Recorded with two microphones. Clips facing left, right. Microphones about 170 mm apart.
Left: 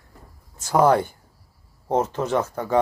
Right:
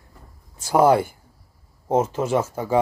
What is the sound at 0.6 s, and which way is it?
Speech, 10° right (ahead or behind).